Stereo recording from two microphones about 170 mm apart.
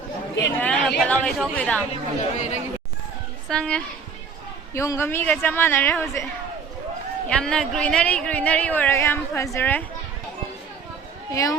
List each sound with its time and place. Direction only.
0.3 s a sound: 10° left (ahead or behind)
2.3 s speech: 45° left (ahead or behind)
3.5 s a woman's voice: 5° left (ahead or behind)
4.7 s speech: 15° left (ahead or behind)
7.3 s speech: 5° left (ahead or behind)
11.3 s speech: 20° left (ahead or behind)